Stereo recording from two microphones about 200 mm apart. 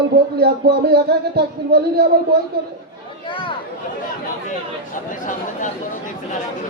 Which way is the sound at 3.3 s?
25° left (ahead or behind).